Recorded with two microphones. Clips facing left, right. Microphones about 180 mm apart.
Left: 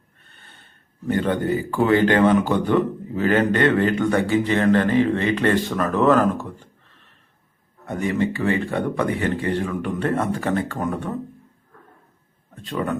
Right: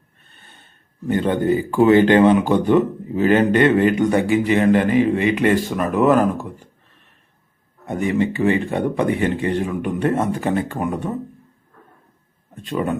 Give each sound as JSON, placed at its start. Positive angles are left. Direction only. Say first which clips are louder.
{"t": 1.0, "sound": "a man's voice", "louder": "right 3 dB", "side_deg": -20}
{"t": 7.9, "sound": "speech", "louder": "right 3 dB", "side_deg": -20}
{"t": 12.6, "sound": "a man's voice", "louder": "right 3 dB", "side_deg": -20}